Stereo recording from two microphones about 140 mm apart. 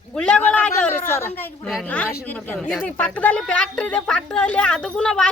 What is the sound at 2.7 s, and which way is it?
A woman's voice, 10° left (ahead or behind).